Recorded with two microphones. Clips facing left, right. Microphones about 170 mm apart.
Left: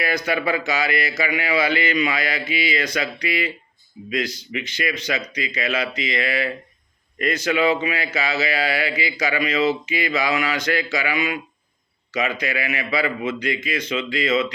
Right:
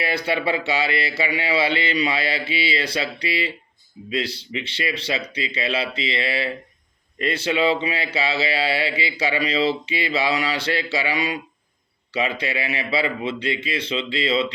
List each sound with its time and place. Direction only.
0.0 s a man's voice: 30° right (ahead or behind)